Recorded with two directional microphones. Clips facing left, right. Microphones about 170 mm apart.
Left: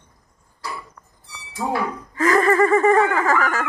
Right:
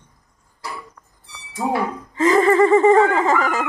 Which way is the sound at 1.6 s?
25° right (ahead or behind).